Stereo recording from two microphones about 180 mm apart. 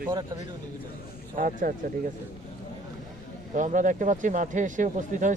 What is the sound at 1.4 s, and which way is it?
Speech, 50° right (ahead or behind).